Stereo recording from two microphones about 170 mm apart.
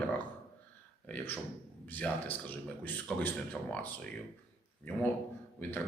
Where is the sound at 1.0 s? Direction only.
10° left (ahead or behind).